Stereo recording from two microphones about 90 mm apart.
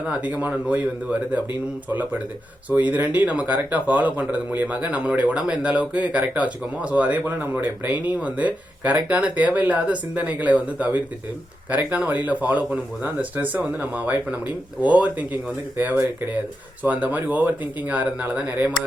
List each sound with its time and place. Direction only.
0.2 s a man's voice: 15° right (ahead or behind)
1.9 s a man's voice: 20° right (ahead or behind)